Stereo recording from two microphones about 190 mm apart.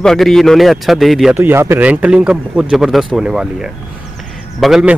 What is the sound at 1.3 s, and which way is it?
A man's voice, 10° right (ahead or behind).